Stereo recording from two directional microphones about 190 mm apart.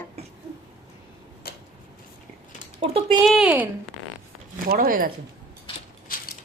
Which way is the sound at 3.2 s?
Centre (ahead or behind).